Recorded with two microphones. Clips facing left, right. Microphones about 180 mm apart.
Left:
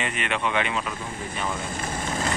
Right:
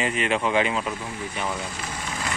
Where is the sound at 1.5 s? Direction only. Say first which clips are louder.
Left 1 dB; 50° left (ahead or behind).